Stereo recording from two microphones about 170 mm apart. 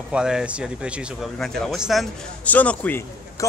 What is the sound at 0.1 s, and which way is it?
Speech, 5° right (ahead or behind).